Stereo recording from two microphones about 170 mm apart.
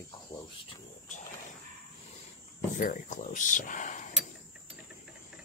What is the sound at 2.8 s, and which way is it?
Speech, 50° left (ahead or behind).